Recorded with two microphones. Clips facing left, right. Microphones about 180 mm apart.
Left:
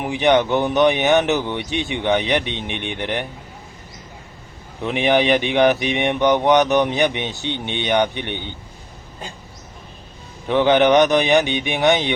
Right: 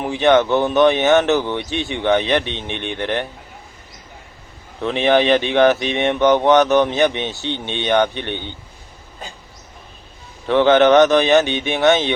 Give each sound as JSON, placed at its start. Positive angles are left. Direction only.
{"t": 0.0, "sound": "speech", "side_deg": 15}
{"t": 4.8, "sound": "speech", "side_deg": 15}
{"t": 10.5, "sound": "speech", "side_deg": 15}